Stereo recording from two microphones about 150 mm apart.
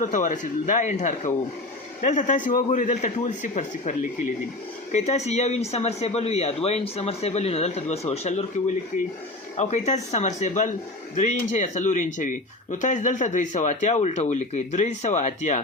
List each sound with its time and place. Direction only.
0.0 s a man's voice: 55° left (ahead or behind)
8.9 s a man's voice: 55° left (ahead or behind)